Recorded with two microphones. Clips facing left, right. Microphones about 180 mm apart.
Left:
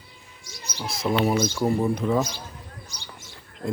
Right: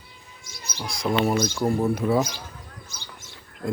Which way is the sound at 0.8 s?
5° left (ahead or behind).